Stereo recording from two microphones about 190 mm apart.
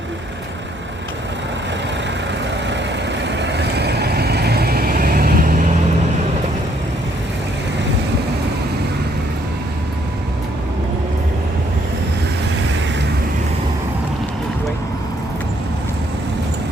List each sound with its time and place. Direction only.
2.6 s vehicle: 65° right (ahead or behind); by 5.6 s 45° right (ahead or behind)